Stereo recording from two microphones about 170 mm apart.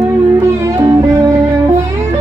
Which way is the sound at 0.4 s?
15° right (ahead or behind).